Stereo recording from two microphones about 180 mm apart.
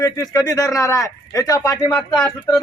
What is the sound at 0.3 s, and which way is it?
A man's voice, 20° left (ahead or behind).